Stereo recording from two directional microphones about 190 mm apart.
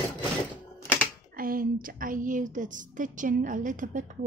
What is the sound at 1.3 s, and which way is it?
A woman's voice, 50° right (ahead or behind).